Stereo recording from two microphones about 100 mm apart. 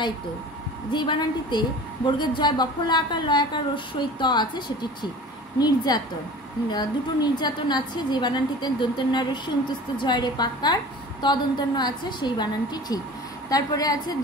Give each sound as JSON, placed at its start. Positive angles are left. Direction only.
{"t": 0.9, "sound": "a woman's voice", "side_deg": 50}